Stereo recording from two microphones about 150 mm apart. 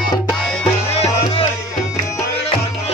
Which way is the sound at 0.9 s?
45° left (ahead or behind).